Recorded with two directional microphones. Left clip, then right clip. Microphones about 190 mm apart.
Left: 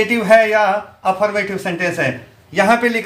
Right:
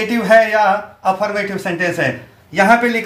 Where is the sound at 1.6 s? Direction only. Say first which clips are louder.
Right 1 dB; 25° left (ahead or behind).